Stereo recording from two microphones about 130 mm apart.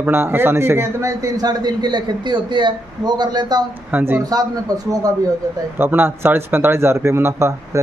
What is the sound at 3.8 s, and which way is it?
Speech, 15° right (ahead or behind).